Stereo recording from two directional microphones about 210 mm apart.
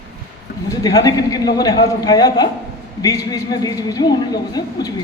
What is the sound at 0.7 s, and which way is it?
A man's voice, 15° left (ahead or behind).